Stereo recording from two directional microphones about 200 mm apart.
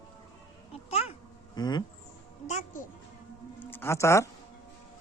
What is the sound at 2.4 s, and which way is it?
Music, 40° left (ahead or behind).